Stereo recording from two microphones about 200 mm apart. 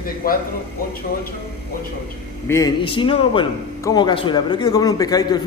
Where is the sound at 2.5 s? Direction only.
20° left (ahead or behind).